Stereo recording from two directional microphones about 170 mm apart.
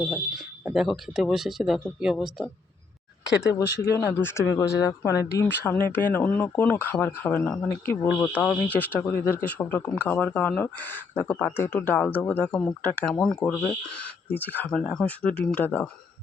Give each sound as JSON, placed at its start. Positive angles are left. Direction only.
{"t": 0.0, "sound": "speech", "side_deg": 0}
{"t": 3.3, "sound": "speech", "side_deg": 20}